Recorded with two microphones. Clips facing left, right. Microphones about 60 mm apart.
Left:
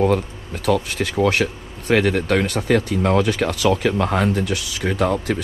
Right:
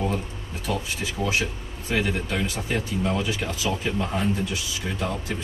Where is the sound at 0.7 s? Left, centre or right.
Left.